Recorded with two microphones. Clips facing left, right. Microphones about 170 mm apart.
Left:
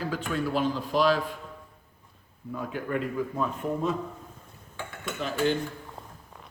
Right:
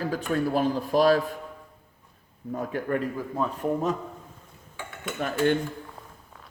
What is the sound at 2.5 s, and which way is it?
Speech, 45° right (ahead or behind).